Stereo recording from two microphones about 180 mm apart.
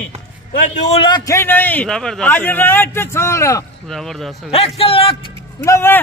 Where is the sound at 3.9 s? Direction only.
Centre (ahead or behind).